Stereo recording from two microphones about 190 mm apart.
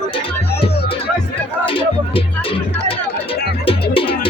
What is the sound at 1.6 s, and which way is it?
Music, 30° left (ahead or behind).